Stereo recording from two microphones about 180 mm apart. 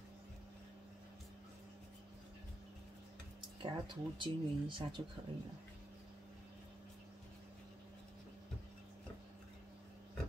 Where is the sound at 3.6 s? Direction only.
25° right (ahead or behind).